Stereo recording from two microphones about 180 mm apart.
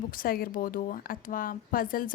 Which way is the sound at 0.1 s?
50° left (ahead or behind).